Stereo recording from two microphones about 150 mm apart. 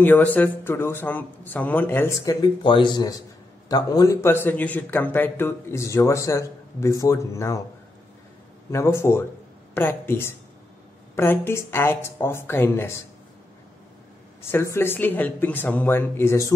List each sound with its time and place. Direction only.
0.0 s a man's voice: 10° left (ahead or behind)
8.7 s a man's voice: 20° left (ahead or behind)
14.5 s a man's voice: 15° left (ahead or behind)